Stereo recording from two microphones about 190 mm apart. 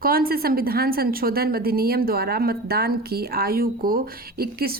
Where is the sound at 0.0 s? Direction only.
50° right (ahead or behind).